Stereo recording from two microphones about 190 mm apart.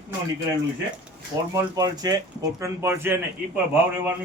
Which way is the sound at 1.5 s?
20° right (ahead or behind).